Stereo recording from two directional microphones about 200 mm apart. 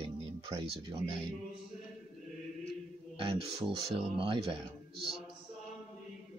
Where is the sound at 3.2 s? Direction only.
30° right (ahead or behind).